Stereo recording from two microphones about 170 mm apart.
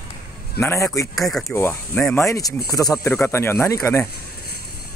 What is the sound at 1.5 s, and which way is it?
Speech, 15° left (ahead or behind).